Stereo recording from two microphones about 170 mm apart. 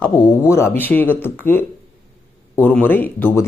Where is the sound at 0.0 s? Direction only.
15° left (ahead or behind).